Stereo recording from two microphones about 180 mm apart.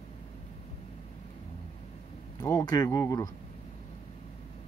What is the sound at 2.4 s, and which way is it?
Speech, 20° left (ahead or behind).